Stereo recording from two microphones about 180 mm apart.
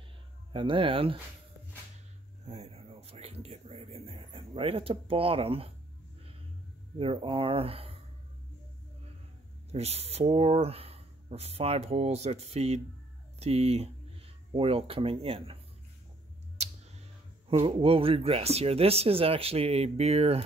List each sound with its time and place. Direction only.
0.5 s speech: 30° right (ahead or behind)
2.4 s a sound: 35° right (ahead or behind)
4.2 s speech: 30° right (ahead or behind)
7.0 s speech: 30° right (ahead or behind)
9.7 s speech: 35° right (ahead or behind)
16.6 s clicking: 40° right (ahead or behind)
17.5 s speech: 30° right (ahead or behind)